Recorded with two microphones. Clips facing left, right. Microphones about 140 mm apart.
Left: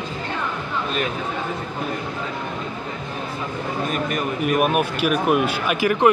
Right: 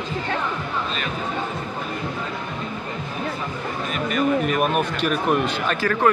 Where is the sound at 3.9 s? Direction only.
45° left (ahead or behind).